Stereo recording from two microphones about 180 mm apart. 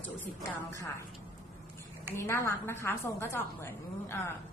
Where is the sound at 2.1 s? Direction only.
15° left (ahead or behind).